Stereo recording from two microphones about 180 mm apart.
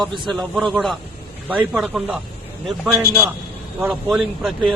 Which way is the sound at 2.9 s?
15° right (ahead or behind).